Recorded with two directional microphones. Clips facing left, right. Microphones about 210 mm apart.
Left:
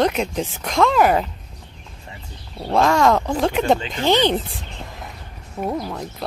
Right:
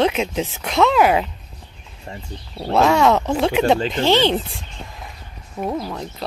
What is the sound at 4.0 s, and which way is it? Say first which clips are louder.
Speech: right 1 dB; 15° left (ahead or behind).